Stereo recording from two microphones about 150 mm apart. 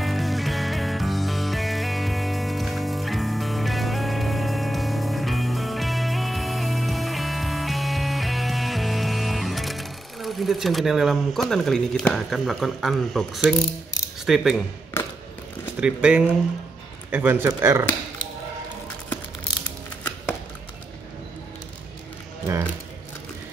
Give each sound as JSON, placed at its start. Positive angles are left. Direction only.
{"t": 0.0, "sound": "music", "side_deg": 0}
{"t": 14.2, "sound": "speech", "side_deg": 0}
{"t": 15.8, "sound": "speech", "side_deg": -5}